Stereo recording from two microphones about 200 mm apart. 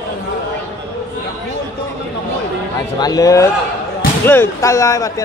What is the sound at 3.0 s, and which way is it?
Speech, 15° left (ahead or behind).